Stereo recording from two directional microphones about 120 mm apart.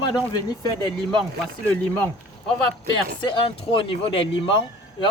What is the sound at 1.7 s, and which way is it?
Speech, 15° left (ahead or behind).